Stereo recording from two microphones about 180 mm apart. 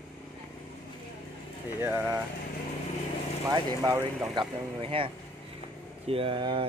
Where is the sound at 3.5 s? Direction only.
20° right (ahead or behind).